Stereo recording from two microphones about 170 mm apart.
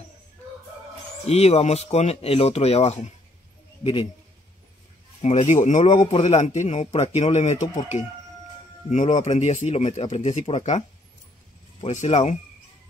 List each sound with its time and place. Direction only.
1.2 s speech: 40° left (ahead or behind)
5.2 s speech: 40° left (ahead or behind)
8.9 s speech: 45° left (ahead or behind)
11.8 s speech: 40° left (ahead or behind)